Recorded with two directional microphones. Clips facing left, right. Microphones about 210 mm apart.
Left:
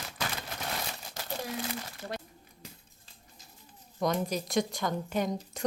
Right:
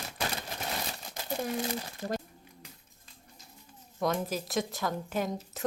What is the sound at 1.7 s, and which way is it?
Speech, 40° right (ahead or behind).